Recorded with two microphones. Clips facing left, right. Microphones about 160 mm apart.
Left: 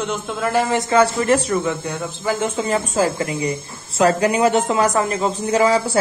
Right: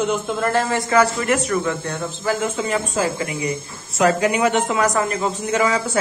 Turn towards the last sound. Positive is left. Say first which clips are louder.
# left 3 dB
turn(degrees=30)  # may be behind; listen again after turning